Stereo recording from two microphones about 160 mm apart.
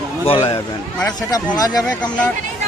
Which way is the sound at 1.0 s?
25° left (ahead or behind).